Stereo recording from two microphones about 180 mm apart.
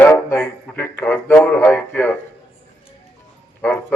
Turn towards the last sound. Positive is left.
turn(degrees=10)  # may be behind; listen again after turning